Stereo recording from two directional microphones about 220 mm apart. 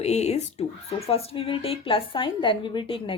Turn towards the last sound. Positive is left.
turn(degrees=25)  # may be behind; listen again after turning